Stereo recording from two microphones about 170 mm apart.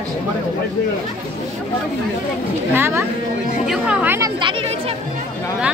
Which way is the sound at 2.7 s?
15° right (ahead or behind).